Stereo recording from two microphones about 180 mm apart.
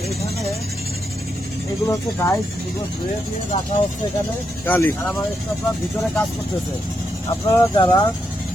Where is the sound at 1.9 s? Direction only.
15° left (ahead or behind).